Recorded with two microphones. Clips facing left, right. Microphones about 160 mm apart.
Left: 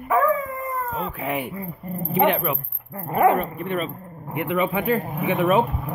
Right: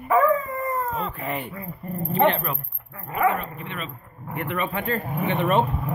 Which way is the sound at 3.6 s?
45° left (ahead or behind).